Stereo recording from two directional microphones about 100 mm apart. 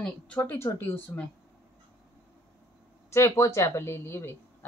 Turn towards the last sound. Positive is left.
turn(degrees=25)  # may be behind; listen again after turning